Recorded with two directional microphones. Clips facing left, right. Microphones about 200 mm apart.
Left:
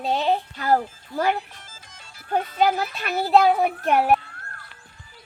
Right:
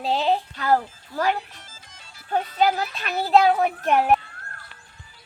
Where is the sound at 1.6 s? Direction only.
50° left (ahead or behind).